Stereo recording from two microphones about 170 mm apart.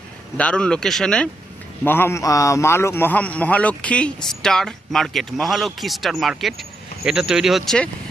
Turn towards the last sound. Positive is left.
turn(degrees=0)  # may be behind; listen again after turning